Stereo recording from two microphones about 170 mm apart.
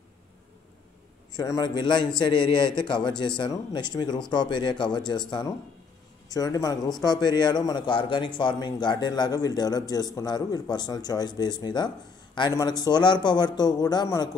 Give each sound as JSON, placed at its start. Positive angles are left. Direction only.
{"t": 1.3, "sound": "a man's voice", "side_deg": 20}
{"t": 6.2, "sound": "a man's voice", "side_deg": 20}